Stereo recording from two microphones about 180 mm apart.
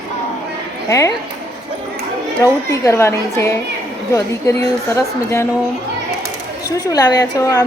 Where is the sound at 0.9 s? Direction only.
20° left (ahead or behind).